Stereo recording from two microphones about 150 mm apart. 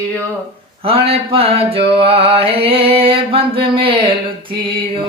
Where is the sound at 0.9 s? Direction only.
40° right (ahead or behind).